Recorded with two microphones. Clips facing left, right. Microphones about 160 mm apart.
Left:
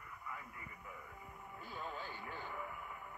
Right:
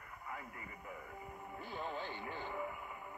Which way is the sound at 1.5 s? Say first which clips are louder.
Right 3 dB; 25° right (ahead or behind).